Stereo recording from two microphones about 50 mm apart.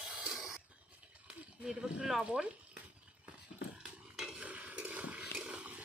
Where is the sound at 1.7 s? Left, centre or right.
Centre.